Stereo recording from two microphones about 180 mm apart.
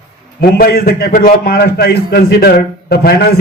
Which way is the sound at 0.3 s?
55° left (ahead or behind).